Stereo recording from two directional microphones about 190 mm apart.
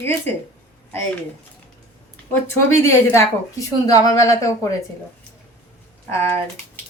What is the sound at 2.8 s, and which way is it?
Speech, 15° left (ahead or behind).